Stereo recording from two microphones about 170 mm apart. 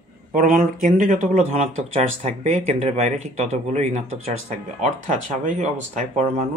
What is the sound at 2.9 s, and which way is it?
Speech, 40° right (ahead or behind).